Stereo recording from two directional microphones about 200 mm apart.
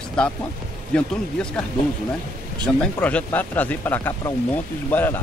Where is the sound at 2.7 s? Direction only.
5° left (ahead or behind).